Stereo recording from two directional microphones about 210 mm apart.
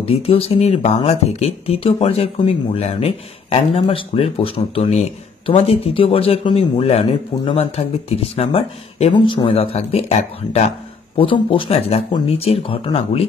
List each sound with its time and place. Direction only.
0.0 s speech: 30° left (ahead or behind)